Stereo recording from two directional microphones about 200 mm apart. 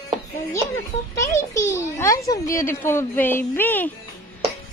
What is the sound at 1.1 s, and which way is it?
A child's voice, 15° left (ahead or behind).